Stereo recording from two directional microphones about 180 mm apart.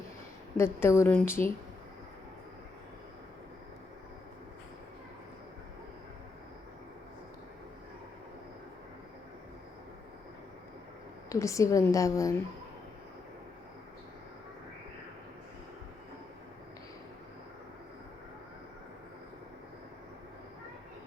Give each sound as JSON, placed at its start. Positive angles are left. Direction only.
{"t": 0.5, "sound": "a woman's voice", "side_deg": 15}
{"t": 11.3, "sound": "a woman's voice", "side_deg": 15}